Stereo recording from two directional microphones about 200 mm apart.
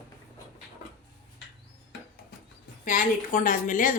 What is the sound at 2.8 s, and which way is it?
A woman's voice, 45° left (ahead or behind).